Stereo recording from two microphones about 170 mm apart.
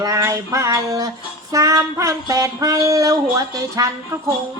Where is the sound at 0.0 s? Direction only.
15° right (ahead or behind).